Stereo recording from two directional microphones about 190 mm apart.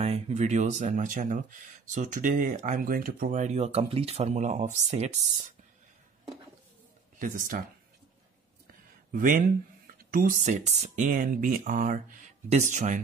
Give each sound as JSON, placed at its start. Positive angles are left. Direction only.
{"t": 0.0, "sound": "speech", "side_deg": -35}
{"t": 7.2, "sound": "speech", "side_deg": -45}
{"t": 8.6, "sound": "a sound", "side_deg": -45}
{"t": 9.9, "sound": "speech", "side_deg": -45}